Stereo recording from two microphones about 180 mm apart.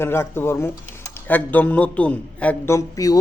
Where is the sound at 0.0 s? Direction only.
15° left (ahead or behind).